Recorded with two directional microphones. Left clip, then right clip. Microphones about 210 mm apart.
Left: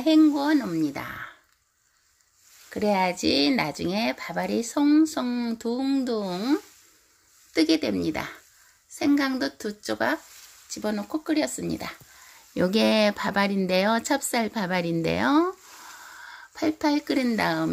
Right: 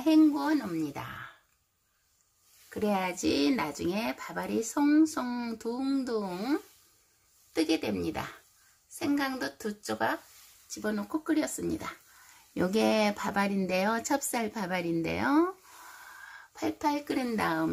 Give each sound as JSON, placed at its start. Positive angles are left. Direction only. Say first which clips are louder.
{"t": 0.0, "sound": "speech", "louder": "left 4 dB", "side_deg": 20}
{"t": 2.7, "sound": "speech", "louder": "left 7 dB", "side_deg": 20}
{"t": 16.5, "sound": "speech", "louder": "left 6 dB", "side_deg": 20}